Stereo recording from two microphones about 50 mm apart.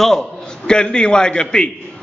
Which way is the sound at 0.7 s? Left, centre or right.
Centre.